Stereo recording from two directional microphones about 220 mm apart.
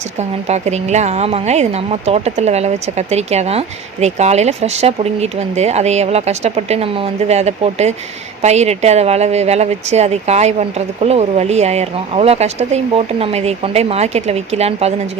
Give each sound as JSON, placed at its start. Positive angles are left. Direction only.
{"t": 0.2, "sound": "speech", "side_deg": -30}